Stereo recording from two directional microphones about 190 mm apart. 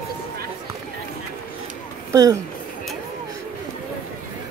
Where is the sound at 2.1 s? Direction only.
20° right (ahead or behind).